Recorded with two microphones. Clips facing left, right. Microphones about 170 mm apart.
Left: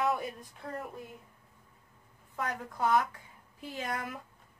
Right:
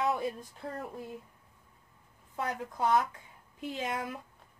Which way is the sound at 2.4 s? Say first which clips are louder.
Right 1 dB; 20° right (ahead or behind).